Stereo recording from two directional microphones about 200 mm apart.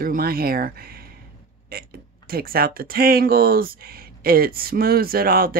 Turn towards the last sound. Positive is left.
turn(degrees=-50)  # may be behind; listen again after turning